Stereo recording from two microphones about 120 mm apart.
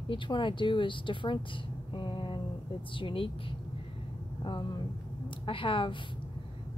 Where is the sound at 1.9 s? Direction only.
40° left (ahead or behind).